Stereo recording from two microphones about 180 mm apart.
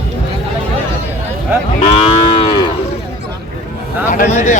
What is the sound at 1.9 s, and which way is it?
Moo, 35° left (ahead or behind).